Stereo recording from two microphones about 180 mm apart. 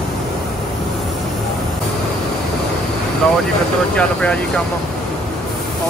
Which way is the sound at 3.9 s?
5° left (ahead or behind).